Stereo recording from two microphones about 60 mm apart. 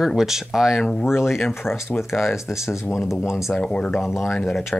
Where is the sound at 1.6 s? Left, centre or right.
Centre.